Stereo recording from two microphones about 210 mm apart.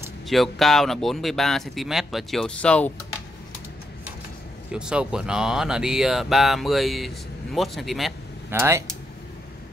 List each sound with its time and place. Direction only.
0.3 s speech: centre (ahead or behind)
4.7 s speech: 5° right (ahead or behind)
8.5 s speech: 10° right (ahead or behind)